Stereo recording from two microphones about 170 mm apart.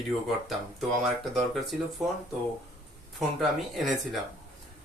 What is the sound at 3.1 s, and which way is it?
Speech, centre (ahead or behind).